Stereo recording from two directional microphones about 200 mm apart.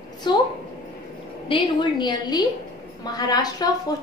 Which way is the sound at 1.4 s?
25° left (ahead or behind).